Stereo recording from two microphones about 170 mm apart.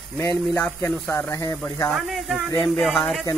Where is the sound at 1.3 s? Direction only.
20° left (ahead or behind).